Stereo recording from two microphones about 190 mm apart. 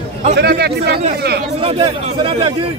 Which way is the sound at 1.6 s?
30° right (ahead or behind).